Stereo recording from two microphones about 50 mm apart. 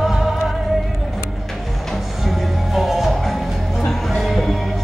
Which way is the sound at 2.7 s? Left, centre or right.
Centre.